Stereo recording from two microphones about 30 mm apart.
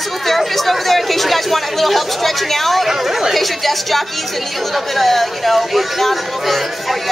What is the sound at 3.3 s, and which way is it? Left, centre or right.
Speech, centre.